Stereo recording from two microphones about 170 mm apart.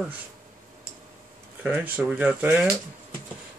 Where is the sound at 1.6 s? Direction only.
10° right (ahead or behind).